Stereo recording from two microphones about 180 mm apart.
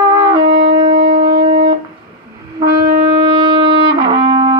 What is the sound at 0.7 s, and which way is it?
Shofar, 35° right (ahead or behind).